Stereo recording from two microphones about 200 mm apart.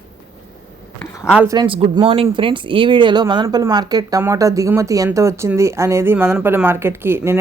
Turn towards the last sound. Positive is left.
turn(degrees=-10)  # may be behind; listen again after turning